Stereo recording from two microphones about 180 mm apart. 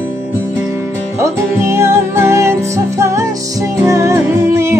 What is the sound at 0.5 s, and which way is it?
Music, 15° right (ahead or behind).